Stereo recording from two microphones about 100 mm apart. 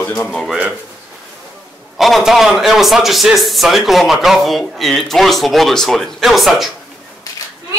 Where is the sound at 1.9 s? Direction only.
Centre (ahead or behind).